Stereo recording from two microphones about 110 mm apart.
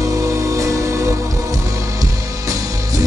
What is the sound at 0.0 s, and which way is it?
Music, 30° right (ahead or behind).